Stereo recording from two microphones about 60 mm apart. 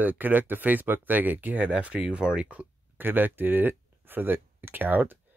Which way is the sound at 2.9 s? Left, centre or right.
Right.